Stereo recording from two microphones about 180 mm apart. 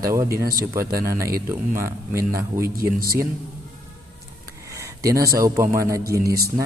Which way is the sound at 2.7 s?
55° right (ahead or behind).